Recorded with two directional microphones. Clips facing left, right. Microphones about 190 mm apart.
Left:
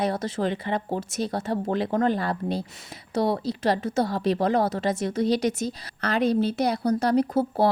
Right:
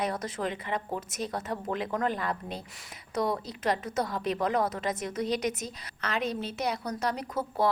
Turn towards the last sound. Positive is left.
turn(degrees=30)  # may be behind; listen again after turning